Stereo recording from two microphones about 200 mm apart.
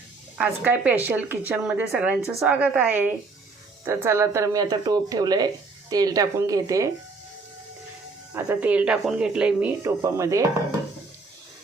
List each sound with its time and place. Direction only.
0.3 s a woman's voice: 5° right (ahead or behind)
8.3 s a woman's voice: 10° right (ahead or behind)